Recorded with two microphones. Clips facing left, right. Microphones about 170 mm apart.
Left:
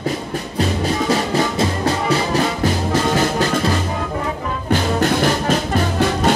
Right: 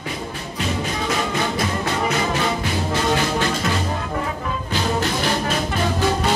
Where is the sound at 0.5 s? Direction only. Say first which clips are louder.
Left 5 dB; 35° left (ahead or behind).